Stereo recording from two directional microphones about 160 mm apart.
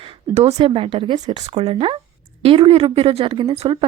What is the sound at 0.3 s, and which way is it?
Speech, 35° right (ahead or behind).